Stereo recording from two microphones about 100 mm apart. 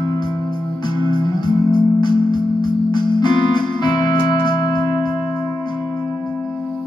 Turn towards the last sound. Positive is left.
turn(degrees=45)  # may be behind; listen again after turning